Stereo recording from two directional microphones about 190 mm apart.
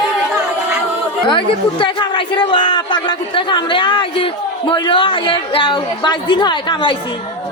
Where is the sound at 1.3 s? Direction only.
25° left (ahead or behind).